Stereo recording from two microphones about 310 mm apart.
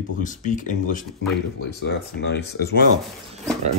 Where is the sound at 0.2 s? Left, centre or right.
Left.